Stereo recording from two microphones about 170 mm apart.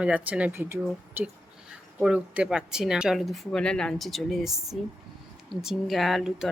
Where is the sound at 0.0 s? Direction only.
10° right (ahead or behind).